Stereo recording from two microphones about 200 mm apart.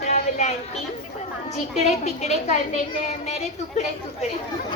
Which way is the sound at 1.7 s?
35° left (ahead or behind).